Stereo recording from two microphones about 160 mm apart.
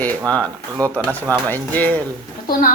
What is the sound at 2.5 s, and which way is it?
Speech, 65° left (ahead or behind).